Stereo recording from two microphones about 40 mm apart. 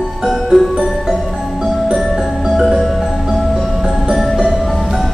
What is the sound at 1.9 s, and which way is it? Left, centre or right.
Music, centre.